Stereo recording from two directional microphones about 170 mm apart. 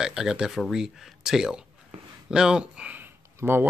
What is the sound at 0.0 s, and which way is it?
Speech, 5° right (ahead or behind).